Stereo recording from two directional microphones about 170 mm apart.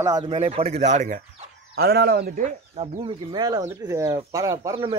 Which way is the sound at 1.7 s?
70° right (ahead or behind).